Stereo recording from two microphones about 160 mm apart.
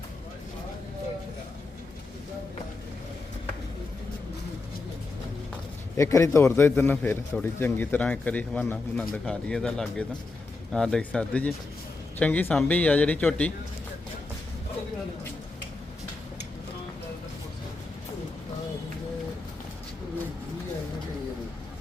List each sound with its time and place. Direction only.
6.0 s a man's voice: 20° left (ahead or behind)